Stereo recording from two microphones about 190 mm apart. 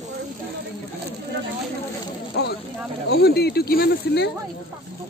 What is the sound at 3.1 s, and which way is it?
Speech, 55° left (ahead or behind).